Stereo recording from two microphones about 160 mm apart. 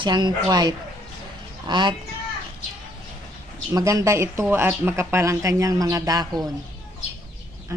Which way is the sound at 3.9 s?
20° right (ahead or behind).